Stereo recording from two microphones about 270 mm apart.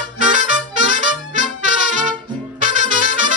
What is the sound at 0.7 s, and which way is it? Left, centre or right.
Music, right.